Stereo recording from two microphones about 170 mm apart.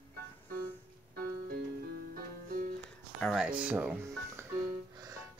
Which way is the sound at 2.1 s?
50° right (ahead or behind).